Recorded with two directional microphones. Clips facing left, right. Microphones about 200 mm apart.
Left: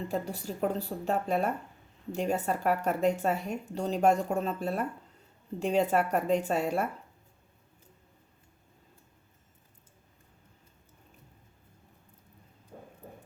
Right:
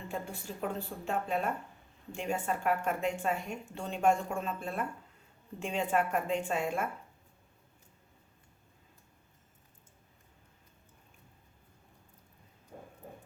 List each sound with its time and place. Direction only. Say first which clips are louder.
0.1 s speech: left 6 dB; 40° left (ahead or behind)